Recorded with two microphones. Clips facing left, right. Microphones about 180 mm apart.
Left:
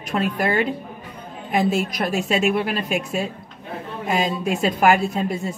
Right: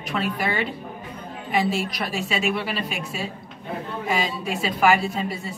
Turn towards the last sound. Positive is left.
turn(degrees=45)  # may be behind; listen again after turning